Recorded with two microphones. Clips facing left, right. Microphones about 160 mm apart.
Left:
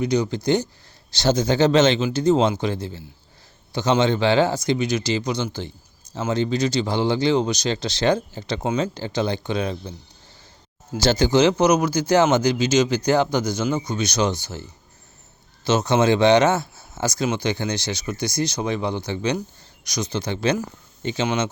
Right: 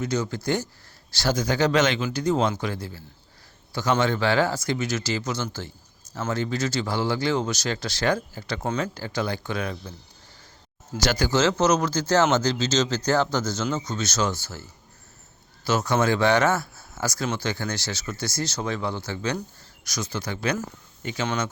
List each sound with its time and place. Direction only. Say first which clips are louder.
0.0 s speech: left 5 dB; 15° left (ahead or behind)
10.9 s speech: left 5 dB; 25° left (ahead or behind)
15.6 s speech: left 4 dB; 20° left (ahead or behind)